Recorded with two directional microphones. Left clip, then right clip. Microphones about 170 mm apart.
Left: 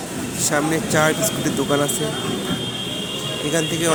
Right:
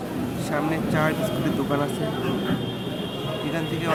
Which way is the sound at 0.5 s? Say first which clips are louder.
Left 6 dB; 30° left (ahead or behind).